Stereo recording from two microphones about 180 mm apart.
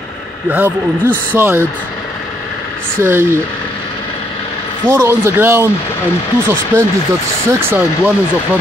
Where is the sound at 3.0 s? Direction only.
15° right (ahead or behind).